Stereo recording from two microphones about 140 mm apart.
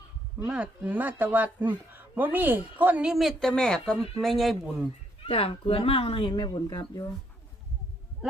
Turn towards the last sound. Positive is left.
turn(degrees=30)  # may be behind; listen again after turning